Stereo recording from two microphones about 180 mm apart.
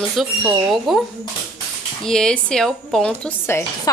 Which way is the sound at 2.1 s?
5° left (ahead or behind).